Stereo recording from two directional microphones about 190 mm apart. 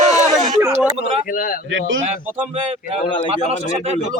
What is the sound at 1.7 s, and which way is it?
Speech, 80° right.